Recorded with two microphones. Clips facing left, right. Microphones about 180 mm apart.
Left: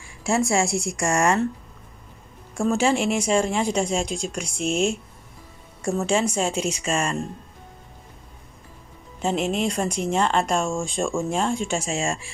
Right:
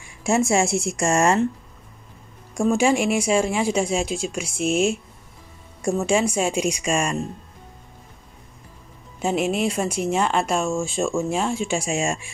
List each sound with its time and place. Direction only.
0.2 s a woman's voice: 20° right (ahead or behind)
2.7 s speech: 10° right (ahead or behind)
9.2 s speech: 10° right (ahead or behind)